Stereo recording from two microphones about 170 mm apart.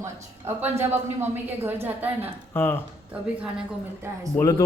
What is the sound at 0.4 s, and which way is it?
A woman's voice, 15° right (ahead or behind).